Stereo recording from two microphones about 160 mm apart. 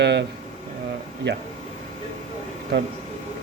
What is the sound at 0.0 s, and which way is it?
Speech, 90° right.